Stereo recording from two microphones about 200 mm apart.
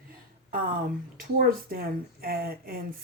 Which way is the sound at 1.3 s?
50° right (ahead or behind).